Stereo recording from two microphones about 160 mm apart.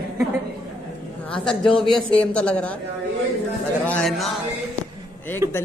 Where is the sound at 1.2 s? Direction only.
5° left (ahead or behind).